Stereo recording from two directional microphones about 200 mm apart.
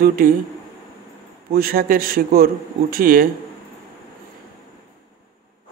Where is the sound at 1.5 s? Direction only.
50° right (ahead or behind).